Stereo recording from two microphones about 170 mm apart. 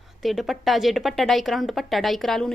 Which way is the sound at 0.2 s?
Centre (ahead or behind).